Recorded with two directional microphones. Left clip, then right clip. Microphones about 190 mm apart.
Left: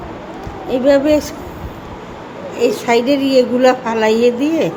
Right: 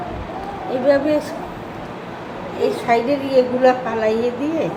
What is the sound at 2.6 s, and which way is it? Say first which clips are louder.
A woman's voice: left 4 dB; 50° left (ahead or behind).